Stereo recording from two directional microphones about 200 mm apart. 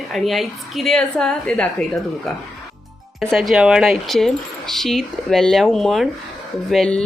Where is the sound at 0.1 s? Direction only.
Centre (ahead or behind).